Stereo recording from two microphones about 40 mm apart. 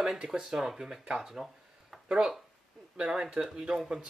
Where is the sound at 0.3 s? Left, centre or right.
Centre.